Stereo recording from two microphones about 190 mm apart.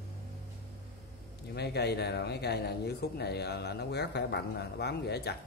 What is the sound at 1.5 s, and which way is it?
Speech, 60° left (ahead or behind).